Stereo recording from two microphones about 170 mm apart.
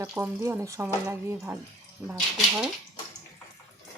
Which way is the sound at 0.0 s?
15° right (ahead or behind).